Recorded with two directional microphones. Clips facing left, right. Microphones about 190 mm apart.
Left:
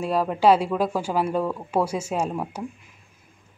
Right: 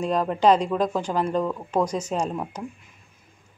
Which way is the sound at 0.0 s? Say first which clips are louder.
Even; 5° left (ahead or behind).